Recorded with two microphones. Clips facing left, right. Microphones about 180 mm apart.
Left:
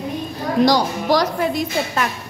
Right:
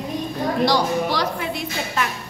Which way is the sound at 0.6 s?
40° left (ahead or behind).